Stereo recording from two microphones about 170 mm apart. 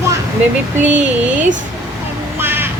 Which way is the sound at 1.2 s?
10° right (ahead or behind).